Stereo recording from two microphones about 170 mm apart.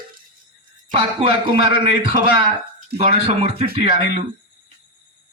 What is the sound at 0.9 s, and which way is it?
Speech, 30° right (ahead or behind).